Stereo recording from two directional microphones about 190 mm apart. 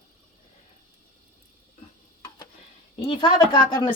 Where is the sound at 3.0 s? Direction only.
25° left (ahead or behind).